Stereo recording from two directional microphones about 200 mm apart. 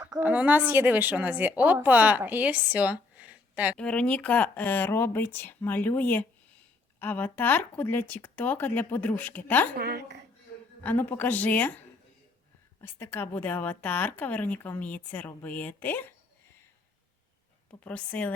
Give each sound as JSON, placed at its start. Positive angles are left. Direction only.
{"t": 0.2, "sound": "a woman's voice", "side_deg": -10}
{"t": 3.8, "sound": "a woman's voice", "side_deg": 5}
{"t": 9.7, "sound": "a woman's voice", "side_deg": -55}
{"t": 10.8, "sound": "a woman's voice", "side_deg": 10}
{"t": 12.8, "sound": "a woman's voice", "side_deg": 10}
{"t": 17.7, "sound": "a woman's voice", "side_deg": 5}